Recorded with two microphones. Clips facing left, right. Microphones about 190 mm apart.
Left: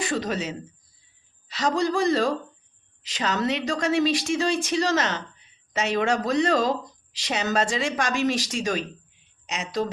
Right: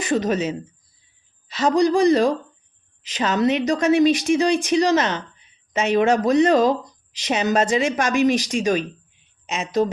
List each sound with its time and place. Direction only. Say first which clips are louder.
0.0 s speech: right 6 dB; 20° right (ahead or behind)
1.6 s speech: right 6 dB; 15° right (ahead or behind)